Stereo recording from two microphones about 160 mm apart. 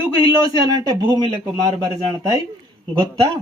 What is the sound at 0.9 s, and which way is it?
Speech, 25° right (ahead or behind).